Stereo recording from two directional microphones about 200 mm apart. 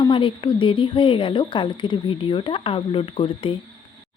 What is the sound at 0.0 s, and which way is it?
Speech, 25° left (ahead or behind).